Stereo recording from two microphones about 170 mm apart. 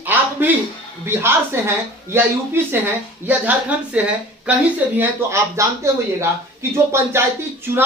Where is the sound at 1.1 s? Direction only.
15° right (ahead or behind).